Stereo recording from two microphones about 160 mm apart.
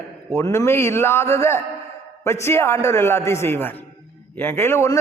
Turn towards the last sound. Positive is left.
turn(degrees=15)  # may be behind; listen again after turning